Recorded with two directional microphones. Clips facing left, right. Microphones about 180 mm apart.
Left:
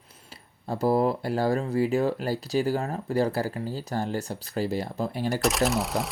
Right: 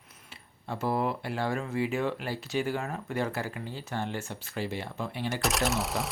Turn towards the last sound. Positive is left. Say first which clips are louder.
# left 4 dB
turn(degrees=0)  # may be behind; listen again after turning